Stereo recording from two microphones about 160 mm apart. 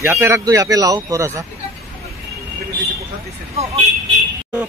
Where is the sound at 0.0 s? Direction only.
15° right (ahead or behind).